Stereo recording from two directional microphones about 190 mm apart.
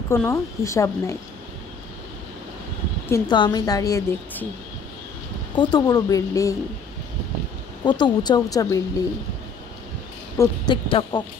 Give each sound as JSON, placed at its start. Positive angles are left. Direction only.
{"t": 0.1, "sound": "a woman's voice", "side_deg": 15}
{"t": 3.1, "sound": "a woman's voice", "side_deg": 25}
{"t": 5.6, "sound": "a woman's voice", "side_deg": 20}
{"t": 7.8, "sound": "a woman's voice", "side_deg": 20}
{"t": 10.4, "sound": "a woman's voice", "side_deg": 15}
{"t": 10.7, "sound": "a woman's voice", "side_deg": 25}